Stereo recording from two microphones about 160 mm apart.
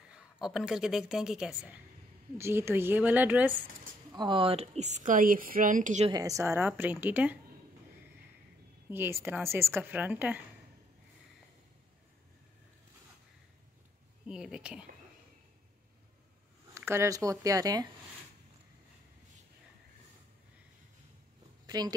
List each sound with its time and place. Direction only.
0.1 s a woman's voice: centre (ahead or behind)
2.3 s a woman's voice: 15° right (ahead or behind)
4.1 s a woman's voice: 30° right (ahead or behind); by 6.0 s 55° right (ahead or behind)
6.0 s a woman's voice: 20° right (ahead or behind)
8.9 s a woman's voice: 15° right (ahead or behind)
14.2 s speech: 5° right (ahead or behind)
16.7 s speech: 15° right (ahead or behind)
21.6 s speech: 25° right (ahead or behind)